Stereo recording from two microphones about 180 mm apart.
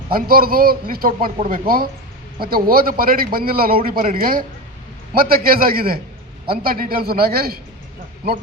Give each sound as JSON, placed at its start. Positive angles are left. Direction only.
{"t": 0.1, "sound": "a man's voice", "side_deg": -55}